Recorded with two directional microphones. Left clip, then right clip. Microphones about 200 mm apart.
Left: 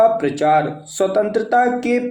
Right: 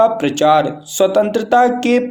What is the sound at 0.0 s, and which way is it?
Speech, 30° right (ahead or behind).